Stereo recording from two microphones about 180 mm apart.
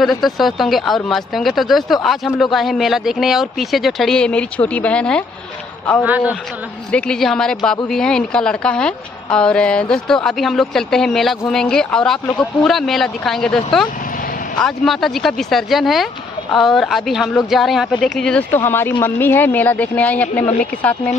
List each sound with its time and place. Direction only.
0.0 s speech: centre (ahead or behind)
6.0 s a man's voice: 10° right (ahead or behind)
6.9 s speech: 5° left (ahead or behind)
14.6 s a woman's voice: centre (ahead or behind)